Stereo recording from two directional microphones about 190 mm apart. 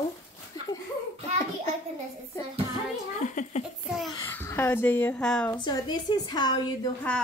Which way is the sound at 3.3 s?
40° left (ahead or behind).